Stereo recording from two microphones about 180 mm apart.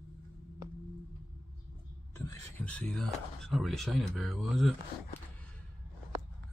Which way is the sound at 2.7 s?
5° left (ahead or behind).